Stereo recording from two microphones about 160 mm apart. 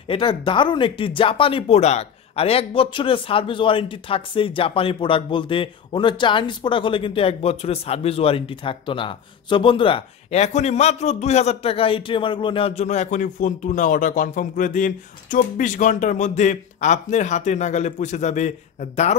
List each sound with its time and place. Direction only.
0.1 s speech: 35° left (ahead or behind)